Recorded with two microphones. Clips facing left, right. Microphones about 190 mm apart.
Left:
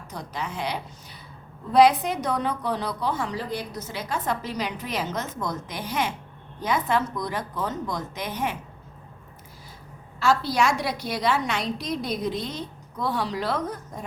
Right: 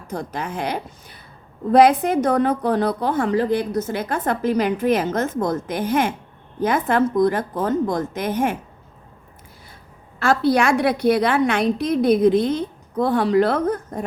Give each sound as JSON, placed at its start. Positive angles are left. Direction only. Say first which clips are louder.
{"t": 0.1, "sound": "a woman's voice", "louder": "right 6 dB", "side_deg": -50}
{"t": 10.2, "sound": "a woman's voice", "louder": "right 5 dB", "side_deg": -55}